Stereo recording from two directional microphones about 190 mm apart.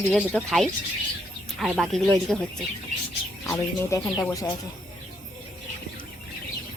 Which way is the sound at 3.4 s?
15° left (ahead or behind).